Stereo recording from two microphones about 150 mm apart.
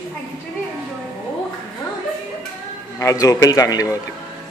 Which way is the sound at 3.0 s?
20° left (ahead or behind).